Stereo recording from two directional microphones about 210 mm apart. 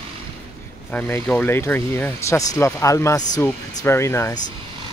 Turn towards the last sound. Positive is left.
turn(degrees=15)  # may be behind; listen again after turning